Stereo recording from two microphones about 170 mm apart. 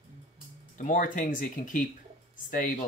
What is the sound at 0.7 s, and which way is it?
Speech, 50° left (ahead or behind).